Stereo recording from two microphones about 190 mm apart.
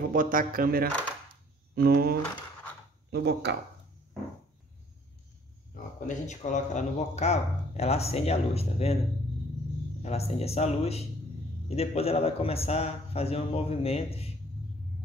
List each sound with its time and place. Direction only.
0.1 s speech: 45° right (ahead or behind)
1.3 s a sound: 55° right (ahead or behind)
3.1 s speech: 60° right (ahead or behind)
5.9 s speech: 40° left (ahead or behind)
10.0 s speech: 35° left (ahead or behind)